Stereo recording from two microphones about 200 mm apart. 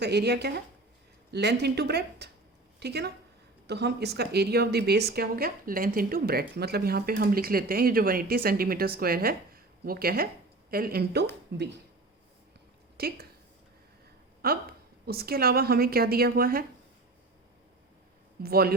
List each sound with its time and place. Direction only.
0.0 s speech: 55° right (ahead or behind)
13.0 s speech: 50° right (ahead or behind)
14.4 s speech: 50° right (ahead or behind)
18.4 s speech: 50° right (ahead or behind)